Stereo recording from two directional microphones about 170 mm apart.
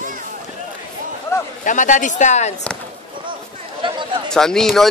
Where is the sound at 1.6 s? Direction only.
50° left (ahead or behind).